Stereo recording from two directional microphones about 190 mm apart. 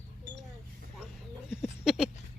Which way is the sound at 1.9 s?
Centre (ahead or behind).